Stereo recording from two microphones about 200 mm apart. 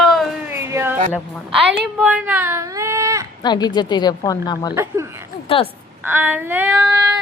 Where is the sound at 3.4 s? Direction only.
20° left (ahead or behind).